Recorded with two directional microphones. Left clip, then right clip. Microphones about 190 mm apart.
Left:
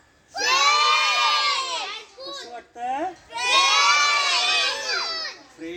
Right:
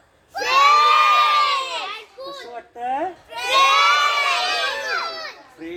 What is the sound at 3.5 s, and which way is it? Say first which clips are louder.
Crowd: right 3 dB; 15° right (ahead or behind).